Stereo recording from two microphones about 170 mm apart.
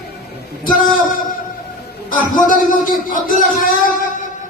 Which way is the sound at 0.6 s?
55° left (ahead or behind).